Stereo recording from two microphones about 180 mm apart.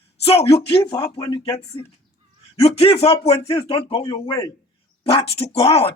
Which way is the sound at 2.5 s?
35° left (ahead or behind).